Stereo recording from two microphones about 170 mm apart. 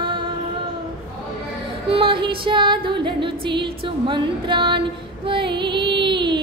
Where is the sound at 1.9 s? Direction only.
30° right (ahead or behind).